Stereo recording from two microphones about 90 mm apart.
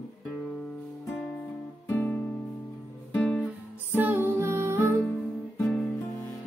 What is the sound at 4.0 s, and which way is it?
Music, 25° right (ahead or behind).